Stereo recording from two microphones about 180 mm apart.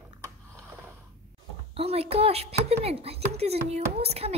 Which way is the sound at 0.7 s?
10° right (ahead or behind).